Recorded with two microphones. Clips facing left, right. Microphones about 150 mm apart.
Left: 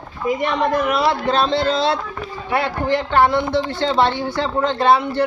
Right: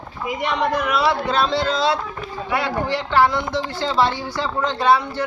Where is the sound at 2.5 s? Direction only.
55° left (ahead or behind).